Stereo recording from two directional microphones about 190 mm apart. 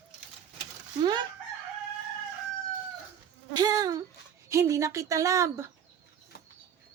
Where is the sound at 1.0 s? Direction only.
25° right (ahead or behind).